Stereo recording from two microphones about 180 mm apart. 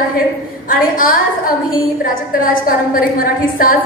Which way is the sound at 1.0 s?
50° left (ahead or behind).